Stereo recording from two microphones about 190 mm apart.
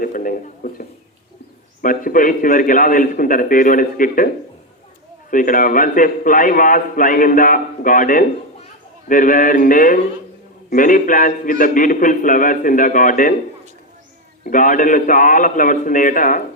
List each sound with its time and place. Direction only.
0.0 s a man's voice: 45° left (ahead or behind)
5.3 s a man's voice: 45° left (ahead or behind)
14.4 s a man's voice: 45° left (ahead or behind)